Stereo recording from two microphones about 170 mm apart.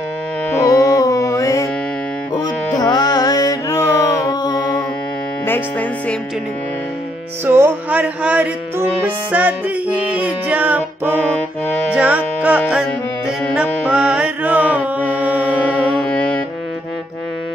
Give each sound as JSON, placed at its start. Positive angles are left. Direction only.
{"t": 0.6, "sound": "music", "side_deg": 20}
{"t": 5.5, "sound": "speech", "side_deg": 10}
{"t": 7.4, "sound": "music", "side_deg": -15}
{"t": 13.6, "sound": "mantra", "side_deg": -5}